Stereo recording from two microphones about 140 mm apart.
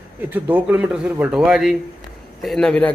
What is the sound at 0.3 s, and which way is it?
A man's voice, 10° right (ahead or behind).